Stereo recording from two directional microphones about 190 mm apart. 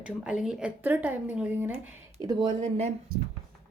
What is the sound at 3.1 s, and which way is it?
Speech, 50° right (ahead or behind).